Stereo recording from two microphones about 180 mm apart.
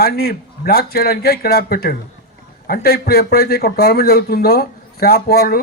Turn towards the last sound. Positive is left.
turn(degrees=60)  # may be behind; listen again after turning